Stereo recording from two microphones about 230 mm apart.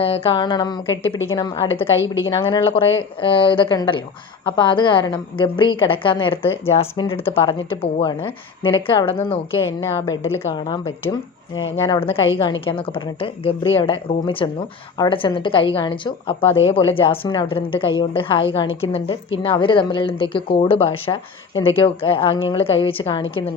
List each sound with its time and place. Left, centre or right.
0.0 s speech: left
10.3 s speech: centre